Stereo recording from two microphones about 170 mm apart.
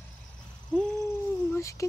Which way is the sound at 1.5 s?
20° left (ahead or behind).